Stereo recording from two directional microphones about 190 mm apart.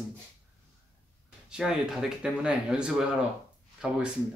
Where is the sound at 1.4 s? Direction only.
5° right (ahead or behind).